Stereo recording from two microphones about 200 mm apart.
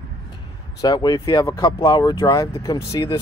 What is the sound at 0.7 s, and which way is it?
Speech, 20° left (ahead or behind).